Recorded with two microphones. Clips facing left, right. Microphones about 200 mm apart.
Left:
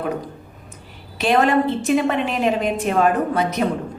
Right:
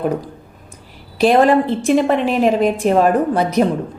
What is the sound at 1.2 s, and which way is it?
A woman's voice, 35° right (ahead or behind).